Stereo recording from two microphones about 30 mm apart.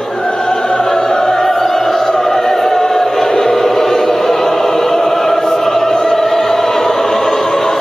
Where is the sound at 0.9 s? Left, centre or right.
Centre.